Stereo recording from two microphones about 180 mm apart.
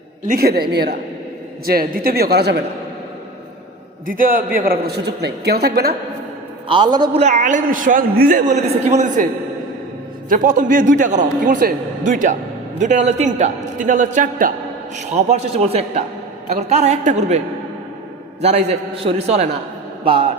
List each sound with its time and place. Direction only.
0.3 s a man's voice: 60° right (ahead or behind)
1.6 s a man's voice: 55° right (ahead or behind)
4.0 s a man's voice: 50° right (ahead or behind)
6.7 s a man's voice: 25° right (ahead or behind)
7.2 s a man's voice: 40° right (ahead or behind)
10.2 s a man's voice: 45° right (ahead or behind)
14.9 s a man's voice: 35° right (ahead or behind)
18.4 s a man's voice: 35° right (ahead or behind)